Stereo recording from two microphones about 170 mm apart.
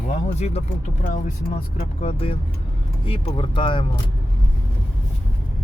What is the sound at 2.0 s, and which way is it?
Speech, 35° left (ahead or behind).